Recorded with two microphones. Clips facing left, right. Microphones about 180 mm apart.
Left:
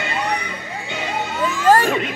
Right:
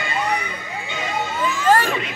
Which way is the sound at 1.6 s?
45° left (ahead or behind).